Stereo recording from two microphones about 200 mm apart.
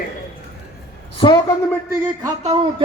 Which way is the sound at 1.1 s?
20° left (ahead or behind).